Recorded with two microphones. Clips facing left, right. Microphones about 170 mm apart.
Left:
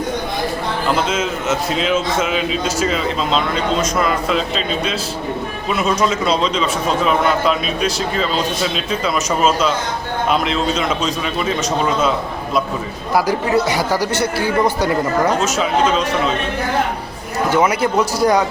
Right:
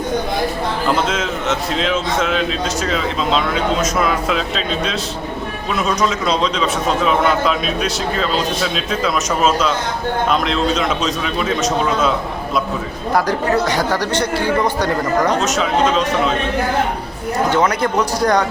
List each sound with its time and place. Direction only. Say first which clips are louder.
0.9 s a man's voice: left 1 dB; centre (ahead or behind)
13.1 s speech: left 1 dB; 10° left (ahead or behind)
17.5 s speech: left 3 dB; 10° left (ahead or behind)